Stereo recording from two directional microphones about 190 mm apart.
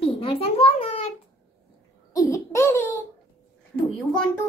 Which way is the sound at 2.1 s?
15° left (ahead or behind).